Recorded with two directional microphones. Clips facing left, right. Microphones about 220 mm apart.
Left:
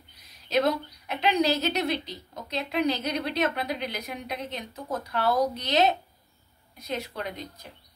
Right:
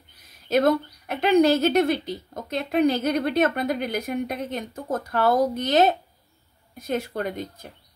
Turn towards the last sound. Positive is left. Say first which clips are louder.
# right 7 dB
turn(degrees=-50)  # may be behind; listen again after turning